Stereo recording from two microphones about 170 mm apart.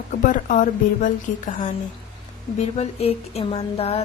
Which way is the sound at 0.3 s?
50° left (ahead or behind).